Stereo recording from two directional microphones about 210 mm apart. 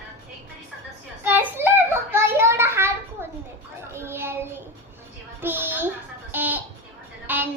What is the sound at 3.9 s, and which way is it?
Child singing, 10° right (ahead or behind).